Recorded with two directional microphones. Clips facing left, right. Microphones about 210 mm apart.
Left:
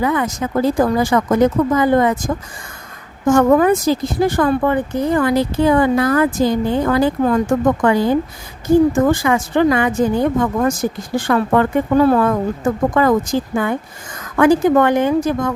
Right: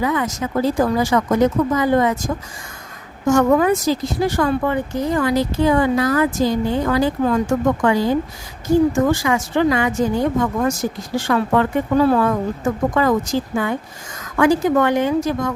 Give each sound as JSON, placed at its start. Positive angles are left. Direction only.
{"t": 0.0, "sound": "speech", "side_deg": 55}